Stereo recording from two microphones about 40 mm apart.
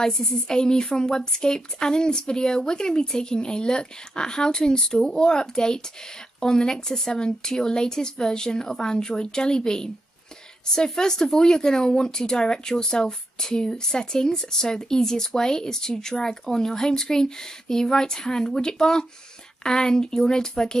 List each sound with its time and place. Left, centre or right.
0.0 s a woman's voice: centre